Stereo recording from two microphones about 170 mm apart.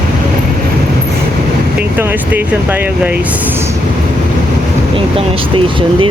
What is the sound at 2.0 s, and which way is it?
Speech, 10° right (ahead or behind).